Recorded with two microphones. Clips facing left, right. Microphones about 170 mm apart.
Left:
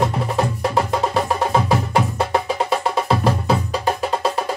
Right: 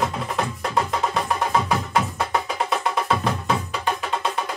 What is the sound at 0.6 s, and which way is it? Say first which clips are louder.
Music: left 2 dB; 30° left (ahead or behind).